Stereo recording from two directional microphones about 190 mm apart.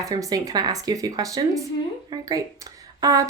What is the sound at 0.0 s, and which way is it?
A woman's voice, 20° right (ahead or behind).